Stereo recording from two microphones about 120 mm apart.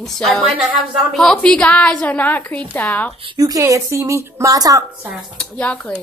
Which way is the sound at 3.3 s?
30° right (ahead or behind).